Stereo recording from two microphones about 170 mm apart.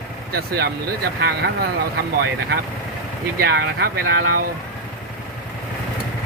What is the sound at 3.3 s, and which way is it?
Speech, 70° right (ahead or behind).